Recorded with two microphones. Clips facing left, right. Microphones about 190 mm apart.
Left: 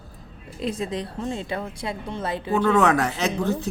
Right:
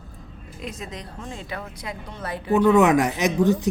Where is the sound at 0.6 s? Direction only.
30° left (ahead or behind).